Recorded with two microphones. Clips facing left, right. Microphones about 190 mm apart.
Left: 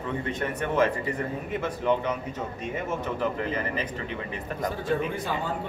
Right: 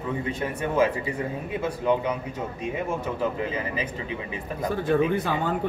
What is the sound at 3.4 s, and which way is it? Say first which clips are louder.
Speech: right 1 dB; 10° right (ahead or behind).